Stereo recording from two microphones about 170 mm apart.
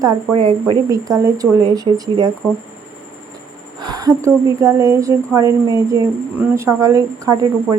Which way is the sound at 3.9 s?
20° right (ahead or behind).